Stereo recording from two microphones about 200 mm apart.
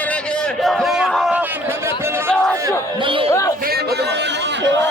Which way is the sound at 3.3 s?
15° left (ahead or behind).